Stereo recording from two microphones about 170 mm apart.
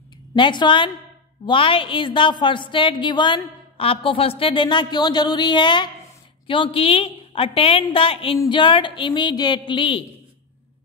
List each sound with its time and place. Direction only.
0.4 s a woman's voice: 25° left (ahead or behind)